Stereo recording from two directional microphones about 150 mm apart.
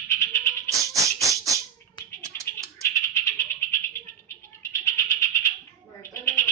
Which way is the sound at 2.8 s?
20° left (ahead or behind).